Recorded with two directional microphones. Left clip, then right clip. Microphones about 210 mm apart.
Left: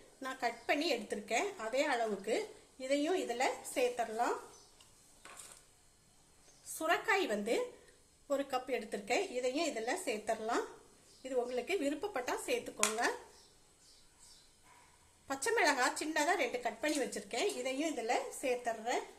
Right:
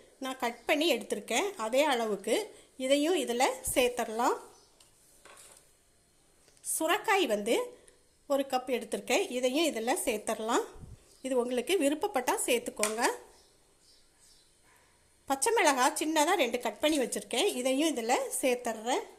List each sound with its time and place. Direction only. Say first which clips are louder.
0.2 s a woman's voice: right 4 dB; 30° right (ahead or behind)
6.7 s a woman's voice: right 5 dB; 35° right (ahead or behind)
15.3 s a woman's voice: right 5 dB; 35° right (ahead or behind)